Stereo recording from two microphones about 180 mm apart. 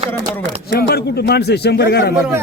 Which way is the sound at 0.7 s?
60° left (ahead or behind).